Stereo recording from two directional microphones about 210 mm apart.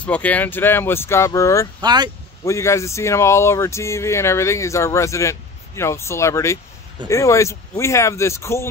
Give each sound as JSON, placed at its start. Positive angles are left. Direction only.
{"t": 0.0, "sound": "speech", "side_deg": 5}
{"t": 1.8, "sound": "speech", "side_deg": -20}
{"t": 2.4, "sound": "speech", "side_deg": 15}